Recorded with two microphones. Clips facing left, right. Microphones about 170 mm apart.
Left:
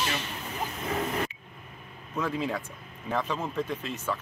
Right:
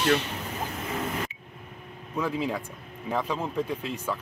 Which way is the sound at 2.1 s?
10° right (ahead or behind).